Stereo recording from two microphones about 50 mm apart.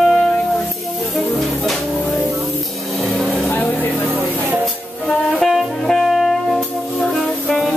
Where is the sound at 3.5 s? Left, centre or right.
Left.